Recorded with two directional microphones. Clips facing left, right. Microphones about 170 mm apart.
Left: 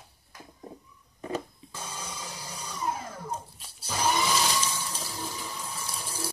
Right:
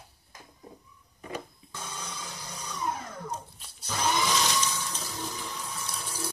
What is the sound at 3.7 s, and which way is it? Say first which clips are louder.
Water: left 1 dB; 5° left (ahead or behind).